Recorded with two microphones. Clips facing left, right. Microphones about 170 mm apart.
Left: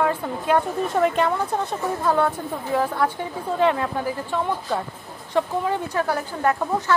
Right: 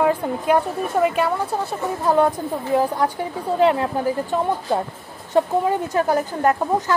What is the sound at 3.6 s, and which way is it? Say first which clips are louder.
Speech: right 3 dB; 30° right (ahead or behind).